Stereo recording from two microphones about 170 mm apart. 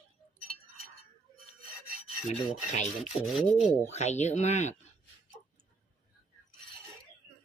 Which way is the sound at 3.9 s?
40° left (ahead or behind).